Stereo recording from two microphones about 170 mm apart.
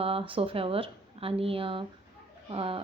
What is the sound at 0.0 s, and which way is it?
A woman's voice, 30° right (ahead or behind).